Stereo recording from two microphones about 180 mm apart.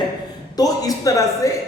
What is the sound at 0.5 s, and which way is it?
A man's voice, 20° left (ahead or behind).